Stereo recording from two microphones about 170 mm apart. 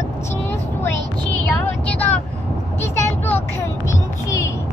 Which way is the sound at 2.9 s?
10° left (ahead or behind).